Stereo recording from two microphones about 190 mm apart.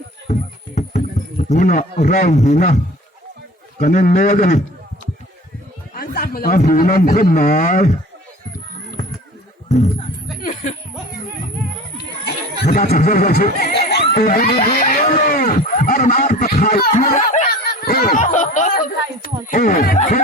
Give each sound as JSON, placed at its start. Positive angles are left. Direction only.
{"t": 0.8, "sound": "music", "side_deg": 40}
{"t": 1.5, "sound": "a man's voice", "side_deg": 40}
{"t": 6.0, "sound": "speech", "side_deg": 50}
{"t": 9.6, "sound": "music", "side_deg": 35}
{"t": 12.2, "sound": "a sound", "side_deg": 50}
{"t": 16.6, "sound": "snicker", "side_deg": 45}
{"t": 17.9, "sound": "speech", "side_deg": 50}